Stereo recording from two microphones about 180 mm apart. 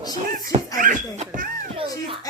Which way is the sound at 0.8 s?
45° right (ahead or behind).